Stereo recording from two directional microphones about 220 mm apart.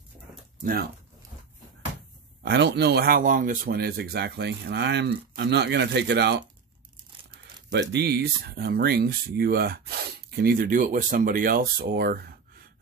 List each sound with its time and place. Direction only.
2.4 s speech: 50° right (ahead or behind)
7.7 s speech: 50° right (ahead or behind)